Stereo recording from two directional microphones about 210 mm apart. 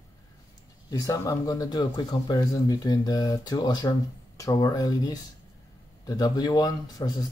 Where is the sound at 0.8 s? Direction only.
15° left (ahead or behind).